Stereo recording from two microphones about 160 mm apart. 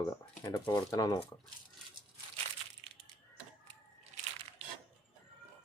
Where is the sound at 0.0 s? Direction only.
20° left (ahead or behind).